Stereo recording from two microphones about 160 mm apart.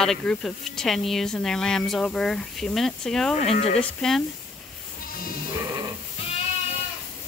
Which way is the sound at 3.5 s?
40° left (ahead or behind).